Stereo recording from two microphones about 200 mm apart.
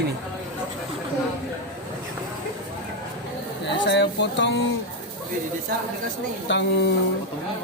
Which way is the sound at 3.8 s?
60° left (ahead or behind).